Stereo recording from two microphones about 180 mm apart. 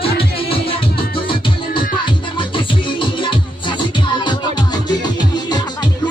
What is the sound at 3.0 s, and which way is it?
Music, 25° left (ahead or behind).